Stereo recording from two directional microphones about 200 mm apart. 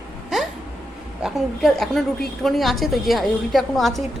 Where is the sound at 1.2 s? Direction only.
Centre (ahead or behind).